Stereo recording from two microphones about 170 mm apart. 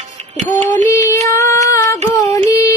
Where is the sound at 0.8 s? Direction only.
20° left (ahead or behind).